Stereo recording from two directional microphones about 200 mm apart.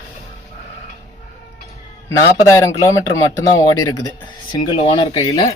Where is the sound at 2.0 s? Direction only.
15° left (ahead or behind).